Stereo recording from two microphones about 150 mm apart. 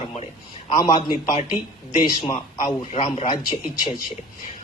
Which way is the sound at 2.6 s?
45° left (ahead or behind).